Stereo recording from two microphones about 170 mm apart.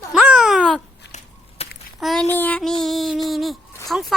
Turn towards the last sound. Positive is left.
turn(degrees=0)  # may be behind; listen again after turning